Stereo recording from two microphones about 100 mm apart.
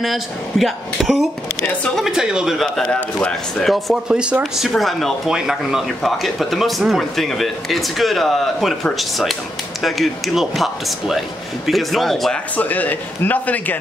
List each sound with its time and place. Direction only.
0.0 s speech: centre (ahead or behind)
12.5 s speech: 15° left (ahead or behind)